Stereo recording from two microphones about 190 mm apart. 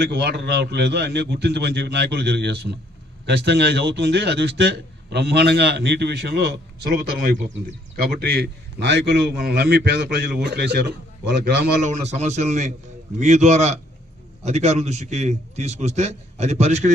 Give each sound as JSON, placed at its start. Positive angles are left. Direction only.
{"t": 0.0, "sound": "a man's voice", "side_deg": -60}
{"t": 11.9, "sound": "a man's voice", "side_deg": -40}